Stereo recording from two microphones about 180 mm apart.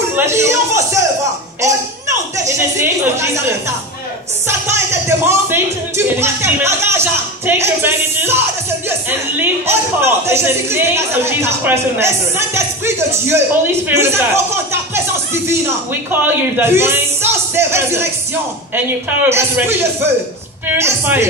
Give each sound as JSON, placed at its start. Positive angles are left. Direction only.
{"t": 0.1, "sound": "a sound", "side_deg": -15}
{"t": 2.3, "sound": "speech", "side_deg": -15}
{"t": 9.4, "sound": "speech", "side_deg": -10}
{"t": 19.2, "sound": "speech", "side_deg": -15}